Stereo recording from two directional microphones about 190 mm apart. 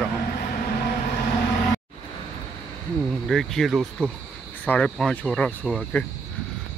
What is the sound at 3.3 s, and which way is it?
Speech, centre (ahead or behind).